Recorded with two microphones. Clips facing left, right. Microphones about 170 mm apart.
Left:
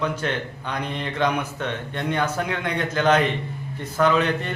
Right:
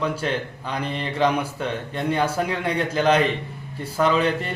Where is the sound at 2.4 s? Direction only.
30° right (ahead or behind).